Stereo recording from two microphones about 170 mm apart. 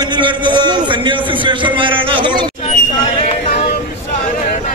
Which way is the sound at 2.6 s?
40° left (ahead or behind).